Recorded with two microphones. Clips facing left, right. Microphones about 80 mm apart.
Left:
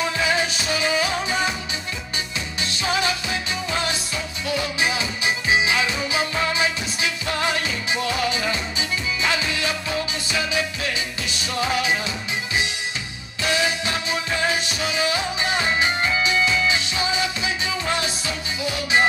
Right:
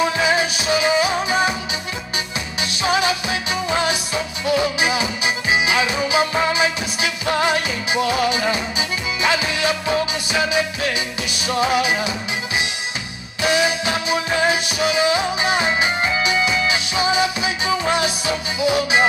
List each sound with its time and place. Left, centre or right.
0.0 s music: centre
2.6 s music: centre
13.4 s music: centre